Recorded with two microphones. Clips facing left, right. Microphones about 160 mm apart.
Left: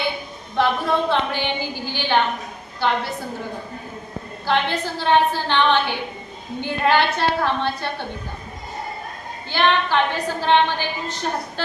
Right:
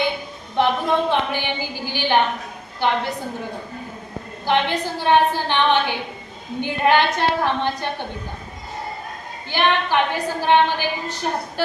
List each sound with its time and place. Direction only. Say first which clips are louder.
0.5 s a woman's voice: right 1 dB; 15° right (ahead or behind)
4.4 s a woman's voice: right 1 dB; 15° right (ahead or behind)
9.5 s a woman's voice: even; 15° right (ahead or behind)